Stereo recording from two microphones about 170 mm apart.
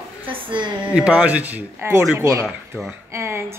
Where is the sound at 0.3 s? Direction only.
30° right (ahead or behind).